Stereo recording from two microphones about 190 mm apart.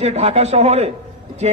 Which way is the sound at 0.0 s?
35° right (ahead or behind).